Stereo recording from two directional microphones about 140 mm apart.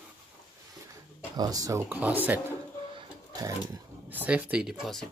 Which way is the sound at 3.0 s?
25° right (ahead or behind).